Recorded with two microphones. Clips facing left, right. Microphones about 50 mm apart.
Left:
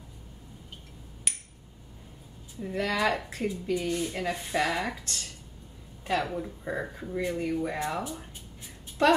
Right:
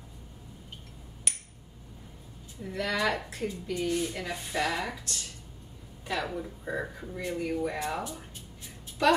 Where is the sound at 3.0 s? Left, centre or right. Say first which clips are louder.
Left 2 dB; left.